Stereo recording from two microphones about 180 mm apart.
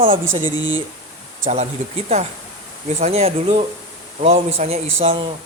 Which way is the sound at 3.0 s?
35° right (ahead or behind).